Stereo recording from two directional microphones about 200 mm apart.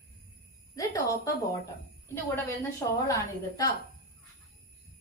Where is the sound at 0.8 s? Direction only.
15° left (ahead or behind).